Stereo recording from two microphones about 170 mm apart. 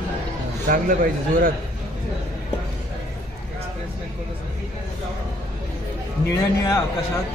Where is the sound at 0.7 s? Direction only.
55° right (ahead or behind).